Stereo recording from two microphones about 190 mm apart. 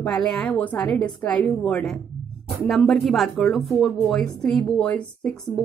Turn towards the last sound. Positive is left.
turn(degrees=5)  # may be behind; listen again after turning